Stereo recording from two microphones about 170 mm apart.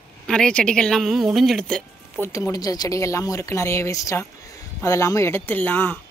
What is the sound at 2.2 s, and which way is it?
Speech, 20° left (ahead or behind).